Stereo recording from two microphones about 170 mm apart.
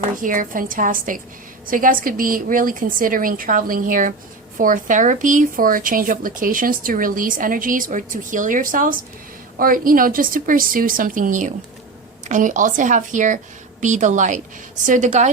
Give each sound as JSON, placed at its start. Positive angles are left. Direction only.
{"t": 0.2, "sound": "a woman's voice", "side_deg": -50}